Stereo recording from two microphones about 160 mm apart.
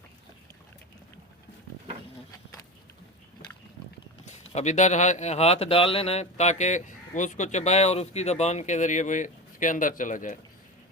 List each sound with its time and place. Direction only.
4.3 s speech: 45° left (ahead or behind)